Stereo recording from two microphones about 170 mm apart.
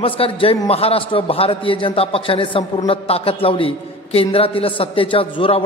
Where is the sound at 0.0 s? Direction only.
30° left (ahead or behind).